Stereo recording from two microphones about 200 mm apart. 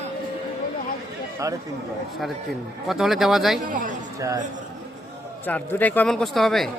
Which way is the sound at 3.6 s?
40° right (ahead or behind).